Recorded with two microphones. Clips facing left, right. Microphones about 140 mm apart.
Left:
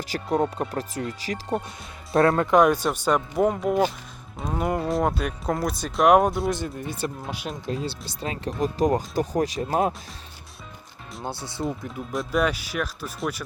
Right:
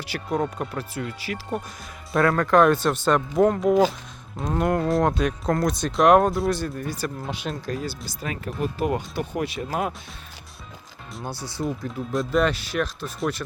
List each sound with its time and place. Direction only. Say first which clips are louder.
0.1 s speech: left 2 dB; 35° left (ahead or behind)
2.1 s speech: even; 25° left (ahead or behind)
9.6 s speech: left 4 dB; 30° left (ahead or behind)
11.2 s speech: even; 25° left (ahead or behind)
12.1 s speech: right 2 dB; 5° left (ahead or behind)